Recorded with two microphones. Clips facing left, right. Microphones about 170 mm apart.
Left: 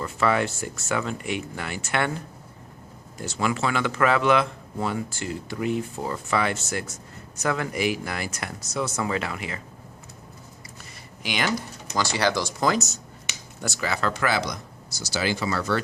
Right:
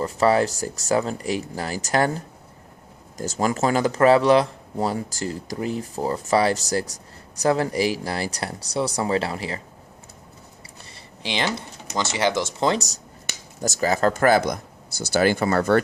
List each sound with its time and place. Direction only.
0.0 s speech: 35° right (ahead or behind)
11.2 s speech: 30° right (ahead or behind); by 15.8 s 55° right (ahead or behind)